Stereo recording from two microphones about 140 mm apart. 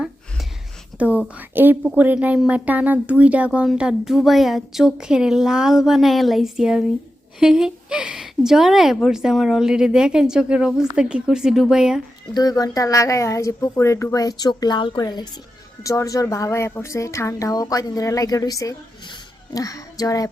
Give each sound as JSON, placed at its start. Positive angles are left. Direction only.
{"t": 0.9, "sound": "a woman's voice", "side_deg": -10}
{"t": 12.3, "sound": "a woman's voice", "side_deg": 25}